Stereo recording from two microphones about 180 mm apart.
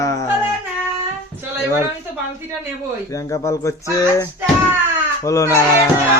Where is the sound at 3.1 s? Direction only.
15° left (ahead or behind).